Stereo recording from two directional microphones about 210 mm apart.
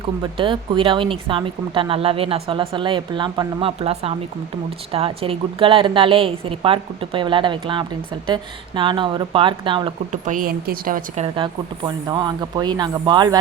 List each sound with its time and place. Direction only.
0.2 s speech: 25° right (ahead or behind)